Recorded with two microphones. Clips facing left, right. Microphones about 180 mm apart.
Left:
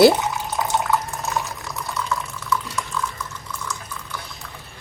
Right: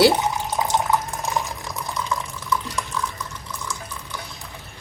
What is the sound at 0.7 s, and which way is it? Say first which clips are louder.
Water: left 1 dB; 15° right (ahead or behind).